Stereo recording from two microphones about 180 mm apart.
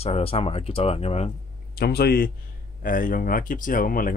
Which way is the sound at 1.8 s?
60° left (ahead or behind).